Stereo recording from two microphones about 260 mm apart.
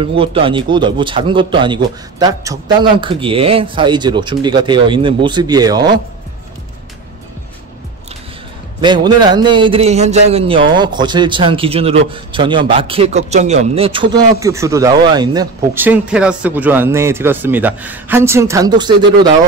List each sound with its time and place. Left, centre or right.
0.0 s speech: right
8.8 s a man's voice: centre